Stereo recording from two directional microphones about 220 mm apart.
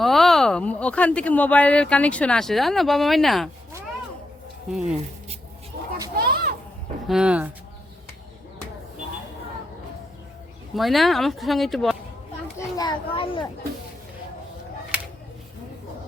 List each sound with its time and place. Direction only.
0.0 s speech: centre (ahead or behind)
5.7 s a sound: 45° right (ahead or behind)
7.1 s speech: 5° right (ahead or behind)
10.8 s speech: centre (ahead or behind)
12.5 s children playing: 15° left (ahead or behind)